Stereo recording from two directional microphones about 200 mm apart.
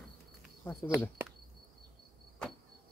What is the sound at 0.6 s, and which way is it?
Speech, 10° left (ahead or behind).